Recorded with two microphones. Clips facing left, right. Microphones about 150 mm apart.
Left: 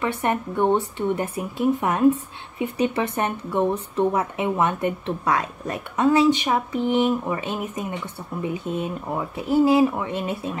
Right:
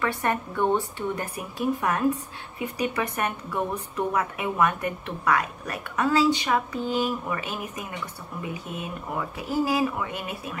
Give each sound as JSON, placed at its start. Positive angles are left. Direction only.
{"t": 0.0, "sound": "speech", "side_deg": 20}